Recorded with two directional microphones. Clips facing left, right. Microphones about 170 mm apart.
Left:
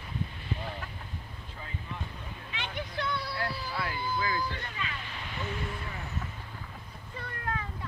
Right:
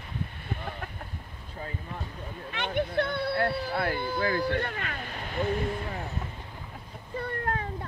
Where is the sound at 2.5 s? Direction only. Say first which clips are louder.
Right 10 dB; 55° right (ahead or behind).